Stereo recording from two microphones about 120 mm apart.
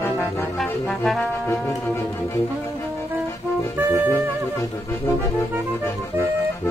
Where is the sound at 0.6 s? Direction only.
5° left (ahead or behind).